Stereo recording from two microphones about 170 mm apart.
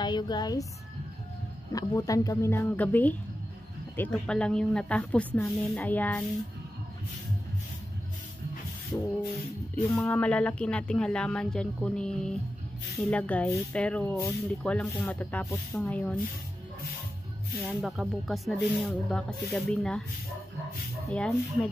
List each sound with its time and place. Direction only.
0.0 s a woman's voice: 25° left (ahead or behind)
1.7 s speech: 20° left (ahead or behind)
9.8 s speech: 10° left (ahead or behind)
17.6 s speech: centre (ahead or behind)
21.1 s speech: 10° left (ahead or behind)